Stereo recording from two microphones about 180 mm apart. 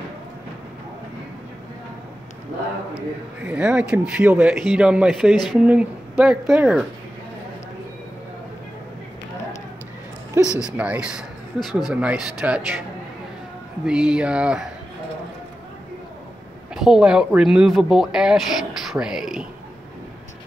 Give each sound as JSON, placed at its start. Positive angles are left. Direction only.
{"t": 3.4, "sound": "speech", "side_deg": -5}
{"t": 10.6, "sound": "speech", "side_deg": -5}
{"t": 13.8, "sound": "speech", "side_deg": -5}
{"t": 16.7, "sound": "speech", "side_deg": -5}